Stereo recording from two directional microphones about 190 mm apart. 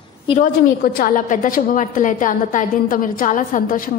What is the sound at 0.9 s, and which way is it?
A woman's voice, 45° left (ahead or behind).